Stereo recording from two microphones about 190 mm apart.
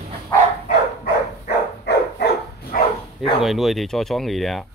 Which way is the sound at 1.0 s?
60° left (ahead or behind).